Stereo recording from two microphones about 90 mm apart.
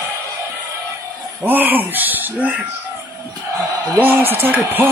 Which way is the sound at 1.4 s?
20° right (ahead or behind).